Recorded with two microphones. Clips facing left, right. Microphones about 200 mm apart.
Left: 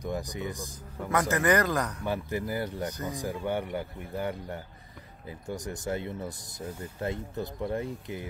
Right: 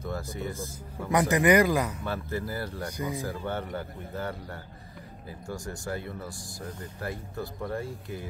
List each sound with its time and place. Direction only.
0.0 s speech: 15° left (ahead or behind)
1.3 s speech: 15° right (ahead or behind)
2.0 s speech: 15° left (ahead or behind)
2.9 s speech: 10° right (ahead or behind)
3.2 s speech: 15° left (ahead or behind)